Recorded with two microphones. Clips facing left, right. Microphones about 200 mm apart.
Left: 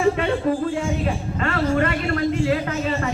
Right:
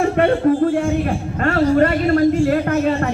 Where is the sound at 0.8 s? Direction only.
55° right (ahead or behind).